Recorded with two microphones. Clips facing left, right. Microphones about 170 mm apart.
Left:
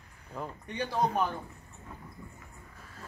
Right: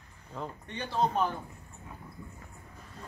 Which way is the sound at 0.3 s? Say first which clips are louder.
Even; 10° left (ahead or behind).